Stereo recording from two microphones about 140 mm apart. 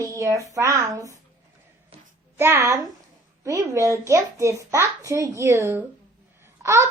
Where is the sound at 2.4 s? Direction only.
20° right (ahead or behind).